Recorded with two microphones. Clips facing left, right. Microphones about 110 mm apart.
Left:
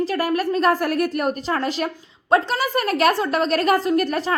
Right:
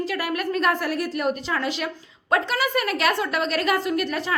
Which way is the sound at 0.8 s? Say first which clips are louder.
Left 3 dB; 50° left (ahead or behind).